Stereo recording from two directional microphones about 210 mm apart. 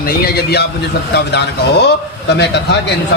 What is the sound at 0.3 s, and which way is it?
A man's voice, 50° left (ahead or behind).